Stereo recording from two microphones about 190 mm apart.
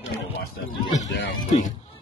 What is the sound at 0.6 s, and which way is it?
Speech, 65° left (ahead or behind).